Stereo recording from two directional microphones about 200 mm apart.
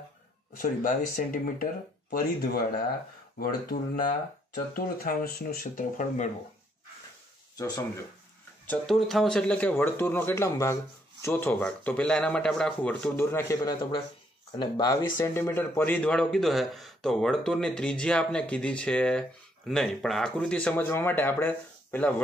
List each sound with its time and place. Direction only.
0.6 s speech: 45° left (ahead or behind)
7.5 s speech: 20° left (ahead or behind)
8.6 s speech: centre (ahead or behind)
14.6 s speech: 20° left (ahead or behind)